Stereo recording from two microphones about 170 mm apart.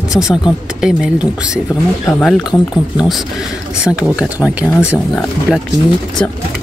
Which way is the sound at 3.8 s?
5° right (ahead or behind).